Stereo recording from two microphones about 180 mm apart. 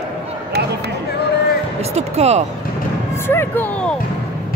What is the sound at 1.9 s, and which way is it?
Music, 35° right (ahead or behind).